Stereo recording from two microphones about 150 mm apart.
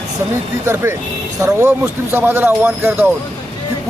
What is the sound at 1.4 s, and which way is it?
Speech, 20° right (ahead or behind).